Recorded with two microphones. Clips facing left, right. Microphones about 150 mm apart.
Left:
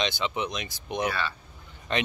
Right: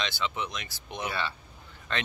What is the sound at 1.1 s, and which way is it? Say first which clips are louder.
Speech: left 2 dB; 25° right (ahead or behind).